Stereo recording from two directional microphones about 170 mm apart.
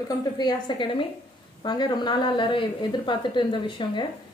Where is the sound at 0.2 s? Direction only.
25° left (ahead or behind).